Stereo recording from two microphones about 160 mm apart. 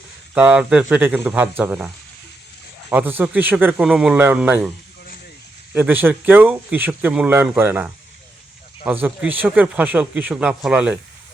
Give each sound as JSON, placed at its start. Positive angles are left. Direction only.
{"t": 0.3, "sound": "speech", "side_deg": -5}
{"t": 2.9, "sound": "speech", "side_deg": -10}
{"t": 5.7, "sound": "speech", "side_deg": -10}
{"t": 8.9, "sound": "speech", "side_deg": -10}